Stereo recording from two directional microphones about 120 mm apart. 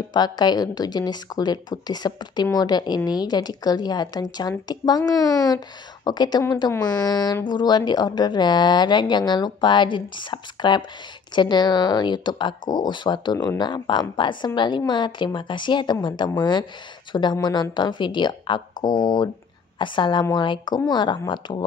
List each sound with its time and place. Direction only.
0.1 s a woman's voice: 35° left (ahead or behind)